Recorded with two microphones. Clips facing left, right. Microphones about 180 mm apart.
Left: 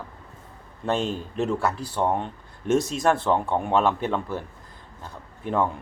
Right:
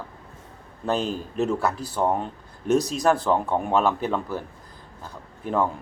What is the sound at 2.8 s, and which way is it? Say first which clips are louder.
Speech: right 1 dB; 40° right (ahead or behind).